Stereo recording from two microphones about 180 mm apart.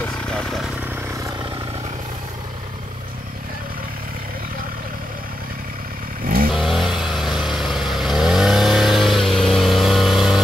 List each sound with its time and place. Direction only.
0.3 s vehicle: centre (ahead or behind)
6.5 s vehicle: centre (ahead or behind)